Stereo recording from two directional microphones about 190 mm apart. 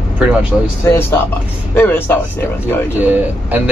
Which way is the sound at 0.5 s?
Centre (ahead or behind).